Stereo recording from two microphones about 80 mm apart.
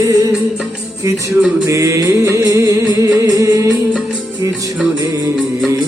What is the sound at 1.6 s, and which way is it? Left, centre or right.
Music, right.